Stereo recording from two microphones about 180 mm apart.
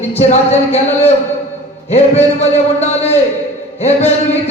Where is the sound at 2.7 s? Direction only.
35° left (ahead or behind).